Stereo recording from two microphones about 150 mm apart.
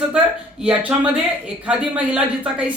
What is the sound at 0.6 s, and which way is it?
Speech, 10° right (ahead or behind).